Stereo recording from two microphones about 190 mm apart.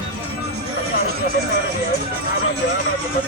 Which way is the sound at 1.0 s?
55° right (ahead or behind).